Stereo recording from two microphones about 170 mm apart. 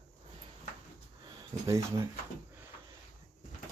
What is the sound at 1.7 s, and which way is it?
Speech, 15° right (ahead or behind).